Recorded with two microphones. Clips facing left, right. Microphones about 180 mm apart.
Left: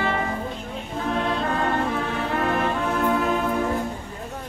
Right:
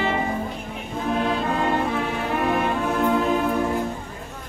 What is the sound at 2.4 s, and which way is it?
Music, 15° right (ahead or behind).